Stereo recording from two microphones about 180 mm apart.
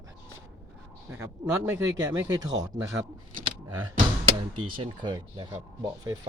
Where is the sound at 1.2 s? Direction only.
15° right (ahead or behind).